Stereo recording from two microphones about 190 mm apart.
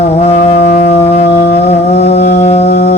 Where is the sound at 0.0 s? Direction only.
35° left (ahead or behind).